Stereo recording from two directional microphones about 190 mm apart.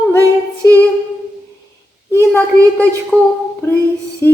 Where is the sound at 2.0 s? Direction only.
10° left (ahead or behind).